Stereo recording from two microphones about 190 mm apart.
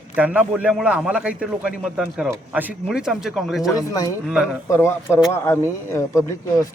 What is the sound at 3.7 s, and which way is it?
A man's voice, 20° left (ahead or behind).